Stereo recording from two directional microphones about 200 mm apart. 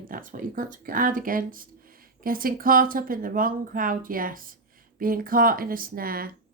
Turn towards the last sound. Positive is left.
turn(degrees=-45)  # may be behind; listen again after turning